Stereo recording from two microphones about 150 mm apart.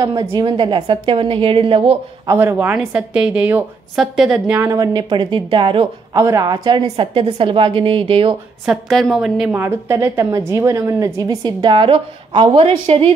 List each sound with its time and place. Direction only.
0.0 s a woman's voice: 25° right (ahead or behind)
2.2 s a woman's voice: 15° right (ahead or behind)
4.6 s a woman's voice: 25° right (ahead or behind)
6.1 s a woman's voice: 20° right (ahead or behind)
8.6 s a woman's voice: centre (ahead or behind)
9.6 s a woman's voice: 15° right (ahead or behind); by 13.1 s 40° right (ahead or behind)